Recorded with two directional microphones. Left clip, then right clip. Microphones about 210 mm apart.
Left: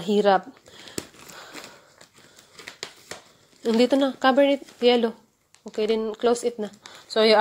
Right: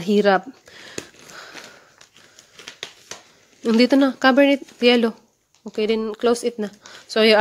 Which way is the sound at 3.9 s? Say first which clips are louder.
Right 5 dB; 35° right (ahead or behind).